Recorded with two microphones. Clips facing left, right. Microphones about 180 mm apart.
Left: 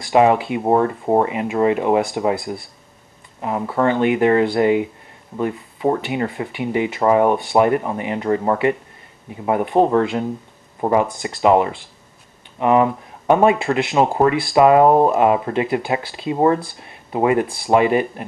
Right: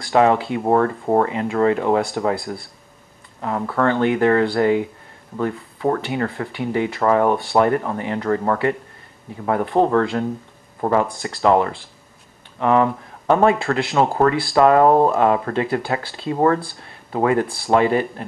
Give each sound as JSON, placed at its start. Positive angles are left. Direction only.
{"t": 0.1, "sound": "speech", "side_deg": 10}
{"t": 3.3, "sound": "speech", "side_deg": 15}
{"t": 16.0, "sound": "speech", "side_deg": 0}
{"t": 17.1, "sound": "speech", "side_deg": 15}
{"t": 17.5, "sound": "speech", "side_deg": 0}